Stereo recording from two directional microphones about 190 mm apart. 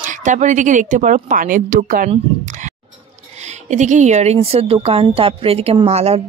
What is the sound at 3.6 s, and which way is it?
Speech, 40° right (ahead or behind).